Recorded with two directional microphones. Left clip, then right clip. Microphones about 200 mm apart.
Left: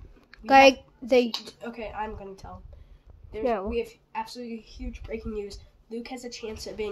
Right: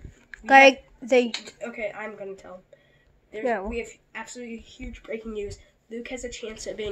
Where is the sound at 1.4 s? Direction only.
25° left (ahead or behind).